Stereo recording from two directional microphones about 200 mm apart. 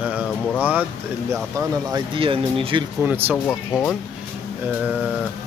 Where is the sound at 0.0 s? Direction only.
5° right (ahead or behind).